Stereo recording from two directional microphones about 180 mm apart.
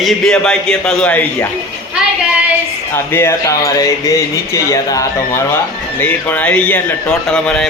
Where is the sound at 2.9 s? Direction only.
15° left (ahead or behind).